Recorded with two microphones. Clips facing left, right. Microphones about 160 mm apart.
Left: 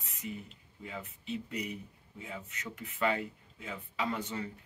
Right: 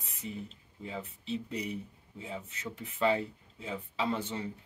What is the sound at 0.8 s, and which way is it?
Speech, 30° right (ahead or behind).